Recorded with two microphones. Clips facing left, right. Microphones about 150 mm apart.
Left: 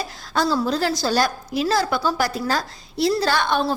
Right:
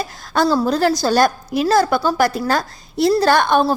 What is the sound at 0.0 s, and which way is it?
A woman's voice, 55° right (ahead or behind).